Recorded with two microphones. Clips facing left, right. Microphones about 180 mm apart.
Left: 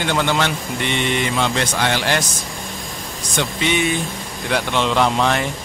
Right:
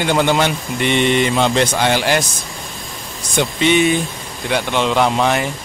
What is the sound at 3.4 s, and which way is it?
Speech, 15° right (ahead or behind).